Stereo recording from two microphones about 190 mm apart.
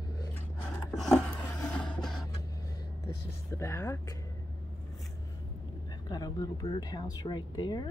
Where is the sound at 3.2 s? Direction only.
15° left (ahead or behind).